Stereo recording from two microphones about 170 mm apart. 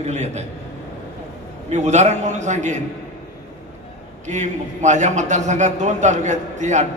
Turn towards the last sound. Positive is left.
turn(degrees=-45)  # may be behind; listen again after turning